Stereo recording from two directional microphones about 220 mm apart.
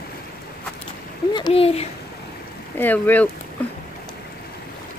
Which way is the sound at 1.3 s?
25° left (ahead or behind).